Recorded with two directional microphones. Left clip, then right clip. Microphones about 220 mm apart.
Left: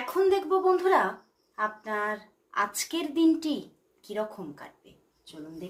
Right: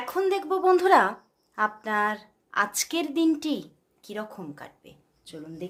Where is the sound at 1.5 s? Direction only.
50° right (ahead or behind); by 4.9 s 30° right (ahead or behind).